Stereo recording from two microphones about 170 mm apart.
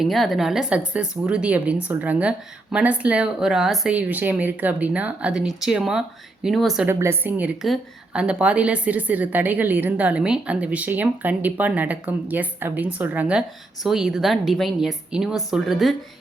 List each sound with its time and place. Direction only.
0.0 s a woman's voice: centre (ahead or behind)
6.8 s a woman's voice: 15° right (ahead or behind)